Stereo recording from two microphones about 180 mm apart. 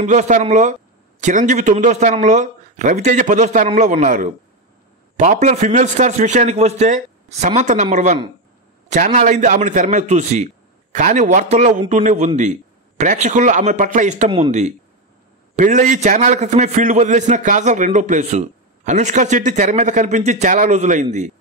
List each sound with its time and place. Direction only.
0.0 s a man's voice: 40° right (ahead or behind)